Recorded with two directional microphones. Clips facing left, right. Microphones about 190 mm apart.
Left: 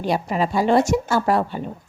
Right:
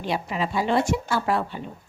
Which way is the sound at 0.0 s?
45° left (ahead or behind).